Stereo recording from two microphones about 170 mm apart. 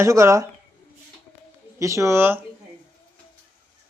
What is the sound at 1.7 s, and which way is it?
Speech, 15° right (ahead or behind).